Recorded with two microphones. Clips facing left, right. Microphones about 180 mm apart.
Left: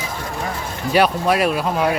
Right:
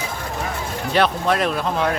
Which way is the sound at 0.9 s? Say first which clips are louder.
Left 3 dB; 10° left (ahead or behind).